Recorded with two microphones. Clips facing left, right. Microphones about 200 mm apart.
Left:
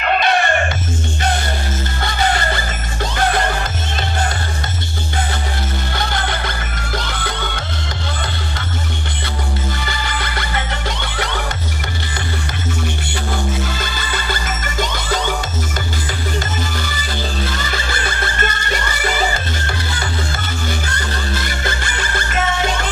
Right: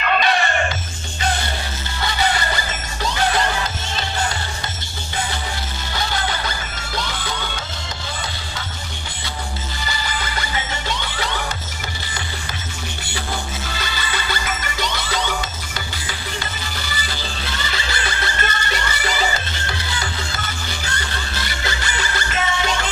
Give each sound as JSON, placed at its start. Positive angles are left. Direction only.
{"t": 0.0, "sound": "chicken", "side_deg": 55}
{"t": 2.0, "sound": "music", "side_deg": 50}
{"t": 5.9, "sound": "music", "side_deg": 55}
{"t": 9.8, "sound": "music", "side_deg": 60}
{"t": 13.7, "sound": "music", "side_deg": 45}
{"t": 17.6, "sound": "music", "side_deg": 45}
{"t": 21.5, "sound": "music", "side_deg": 50}